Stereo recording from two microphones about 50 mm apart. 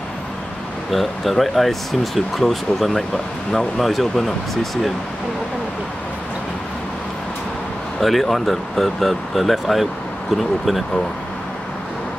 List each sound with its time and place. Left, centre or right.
0.9 s speech: centre
8.0 s speech: centre